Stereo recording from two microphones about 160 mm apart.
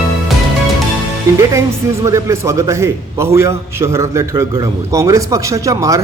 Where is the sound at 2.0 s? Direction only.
20° right (ahead or behind).